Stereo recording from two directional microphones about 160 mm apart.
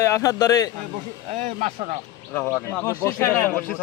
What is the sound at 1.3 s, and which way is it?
Speech, 45° right (ahead or behind).